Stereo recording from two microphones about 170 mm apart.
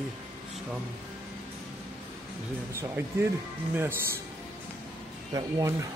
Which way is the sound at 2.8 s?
15° right (ahead or behind).